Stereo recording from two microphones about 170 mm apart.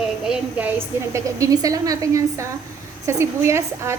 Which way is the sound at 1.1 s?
20° right (ahead or behind).